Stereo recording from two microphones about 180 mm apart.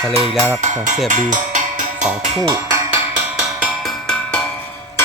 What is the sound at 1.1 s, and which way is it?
Music, 45° right (ahead or behind).